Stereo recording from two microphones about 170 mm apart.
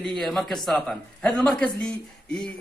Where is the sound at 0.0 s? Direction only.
Centre (ahead or behind).